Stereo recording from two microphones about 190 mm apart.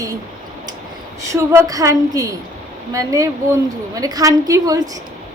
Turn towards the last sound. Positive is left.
turn(degrees=-20)  # may be behind; listen again after turning